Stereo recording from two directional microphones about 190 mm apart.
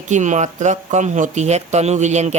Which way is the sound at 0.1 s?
40° right (ahead or behind).